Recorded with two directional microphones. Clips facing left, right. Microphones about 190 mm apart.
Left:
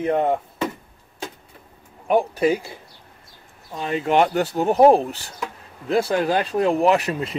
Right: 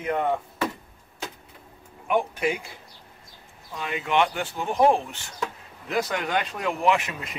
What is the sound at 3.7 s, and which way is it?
Speech, 35° left (ahead or behind).